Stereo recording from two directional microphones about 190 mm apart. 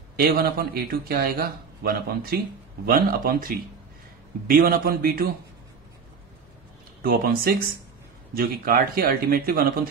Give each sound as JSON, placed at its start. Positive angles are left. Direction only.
{"t": 0.1, "sound": "a man's voice", "side_deg": -50}
{"t": 7.0, "sound": "a man's voice", "side_deg": -50}